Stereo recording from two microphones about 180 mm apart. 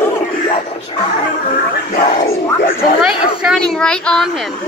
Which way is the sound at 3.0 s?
Centre (ahead or behind).